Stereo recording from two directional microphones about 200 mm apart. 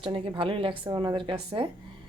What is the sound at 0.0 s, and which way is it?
Speech, 25° right (ahead or behind).